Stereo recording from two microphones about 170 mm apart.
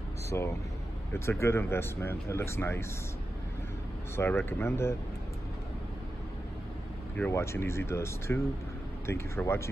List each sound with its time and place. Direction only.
0.3 s speech: 15° left (ahead or behind)
4.2 s speech: 10° left (ahead or behind)
7.2 s speech: 15° left (ahead or behind)